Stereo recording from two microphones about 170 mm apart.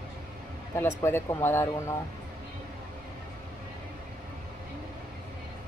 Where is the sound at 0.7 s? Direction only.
15° left (ahead or behind).